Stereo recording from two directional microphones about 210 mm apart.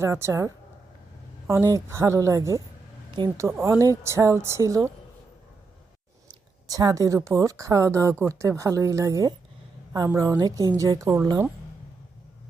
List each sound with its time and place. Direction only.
0.0 s speech: 15° right (ahead or behind)
6.7 s speech: 15° right (ahead or behind)